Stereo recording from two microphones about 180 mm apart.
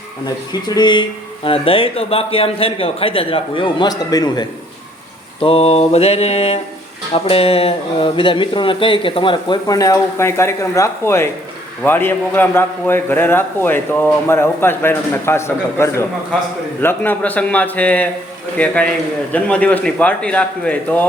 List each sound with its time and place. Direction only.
0.6 s a man's voice: 25° left (ahead or behind)
5.4 s a man's voice: 35° left (ahead or behind); by 21.1 s 10° left (ahead or behind)